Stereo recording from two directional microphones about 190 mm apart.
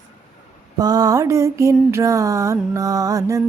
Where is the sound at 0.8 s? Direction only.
20° right (ahead or behind).